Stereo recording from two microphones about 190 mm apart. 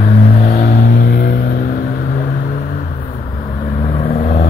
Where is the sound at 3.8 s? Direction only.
30° left (ahead or behind).